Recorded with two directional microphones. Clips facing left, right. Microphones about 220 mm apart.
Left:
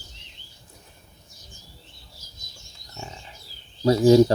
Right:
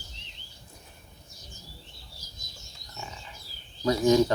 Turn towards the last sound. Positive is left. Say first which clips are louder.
# left 6 dB
turn(degrees=30)  # may be behind; listen again after turning